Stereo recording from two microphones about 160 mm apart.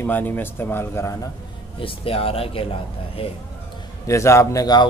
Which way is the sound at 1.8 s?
35° left (ahead or behind).